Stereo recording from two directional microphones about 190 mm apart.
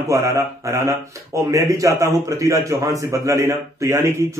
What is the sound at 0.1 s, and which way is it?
Speech, 15° right (ahead or behind).